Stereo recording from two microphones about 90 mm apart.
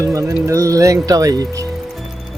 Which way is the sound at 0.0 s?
35° right (ahead or behind).